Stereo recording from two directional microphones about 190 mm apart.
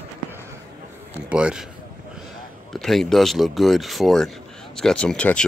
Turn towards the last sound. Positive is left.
turn(degrees=5)  # may be behind; listen again after turning